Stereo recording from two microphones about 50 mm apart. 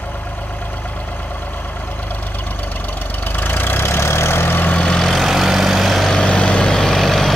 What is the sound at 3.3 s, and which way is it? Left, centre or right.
Vehicle, left.